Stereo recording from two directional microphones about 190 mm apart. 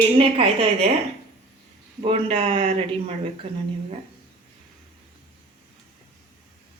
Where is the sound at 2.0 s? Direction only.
30° right (ahead or behind).